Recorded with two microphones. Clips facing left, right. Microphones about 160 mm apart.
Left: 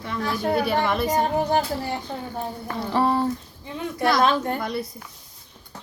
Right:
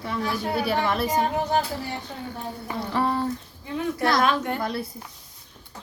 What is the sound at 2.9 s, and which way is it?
A woman's voice, 30° left (ahead or behind).